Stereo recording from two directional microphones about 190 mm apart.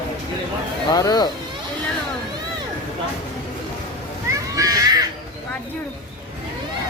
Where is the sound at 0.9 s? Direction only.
20° left (ahead or behind).